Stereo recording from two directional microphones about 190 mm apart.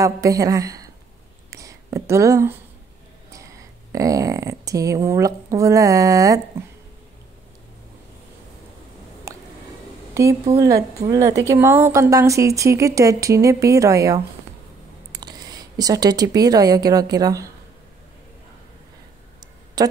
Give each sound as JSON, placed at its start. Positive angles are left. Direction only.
{"t": 0.0, "sound": "speech", "side_deg": -15}
{"t": 1.5, "sound": "a sound", "side_deg": -15}
{"t": 3.9, "sound": "speech", "side_deg": -15}
{"t": 9.3, "sound": "a sound", "side_deg": -15}
{"t": 10.1, "sound": "speech", "side_deg": -15}
{"t": 19.8, "sound": "speech", "side_deg": -20}